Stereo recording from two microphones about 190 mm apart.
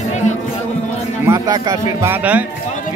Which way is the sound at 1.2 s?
20° right (ahead or behind).